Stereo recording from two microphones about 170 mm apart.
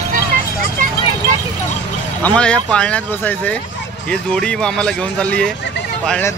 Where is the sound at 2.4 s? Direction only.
5° left (ahead or behind).